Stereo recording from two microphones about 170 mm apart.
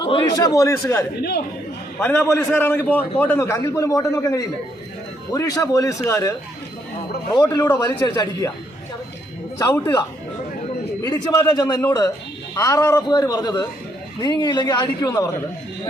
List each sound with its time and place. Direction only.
0.0 s a man's voice: 25° left (ahead or behind)
7.3 s a man's voice: 25° left (ahead or behind)
11.0 s a man's voice: 20° left (ahead or behind)